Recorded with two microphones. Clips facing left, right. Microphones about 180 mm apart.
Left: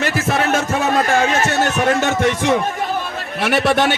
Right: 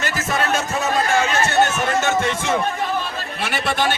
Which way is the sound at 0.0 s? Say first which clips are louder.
Left 4 dB; 60° left (ahead or behind).